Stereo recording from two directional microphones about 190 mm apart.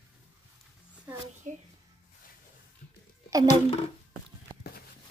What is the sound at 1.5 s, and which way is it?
Speech, 40° right (ahead or behind).